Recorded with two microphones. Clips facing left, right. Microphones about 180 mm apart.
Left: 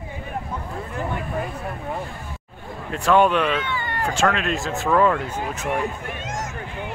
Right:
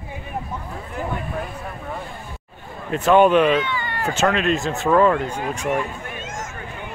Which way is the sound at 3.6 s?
50° left (ahead or behind).